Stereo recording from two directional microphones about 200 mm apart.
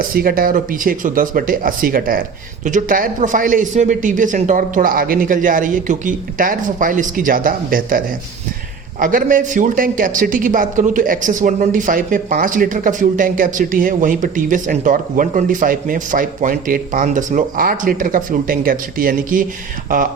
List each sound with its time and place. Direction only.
0.1 s a man's voice: 45° right (ahead or behind)